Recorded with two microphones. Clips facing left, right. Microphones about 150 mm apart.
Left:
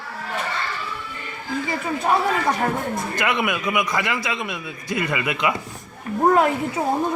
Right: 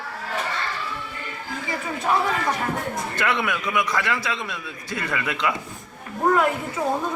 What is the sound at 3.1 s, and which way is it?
A man's voice, 15° left (ahead or behind).